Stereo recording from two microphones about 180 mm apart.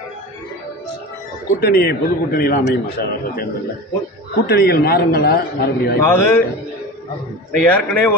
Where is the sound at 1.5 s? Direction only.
60° left (ahead or behind).